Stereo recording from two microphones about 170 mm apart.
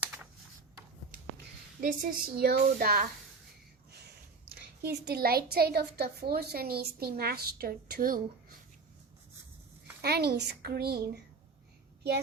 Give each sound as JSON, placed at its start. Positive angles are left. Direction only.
{"t": 1.8, "sound": "a woman's voice", "side_deg": -55}
{"t": 4.4, "sound": "a woman's voice", "side_deg": -70}
{"t": 10.0, "sound": "a woman's voice", "side_deg": -70}